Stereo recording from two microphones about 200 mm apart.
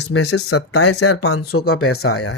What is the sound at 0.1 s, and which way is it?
Speech, 90° left.